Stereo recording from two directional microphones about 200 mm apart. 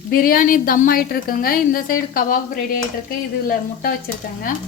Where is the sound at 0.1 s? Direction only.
45° left (ahead or behind).